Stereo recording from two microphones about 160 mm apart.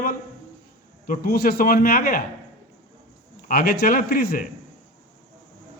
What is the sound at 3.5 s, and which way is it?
Speech, 70° left (ahead or behind).